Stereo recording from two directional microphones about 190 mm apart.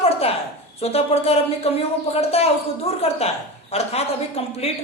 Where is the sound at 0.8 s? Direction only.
30° left (ahead or behind).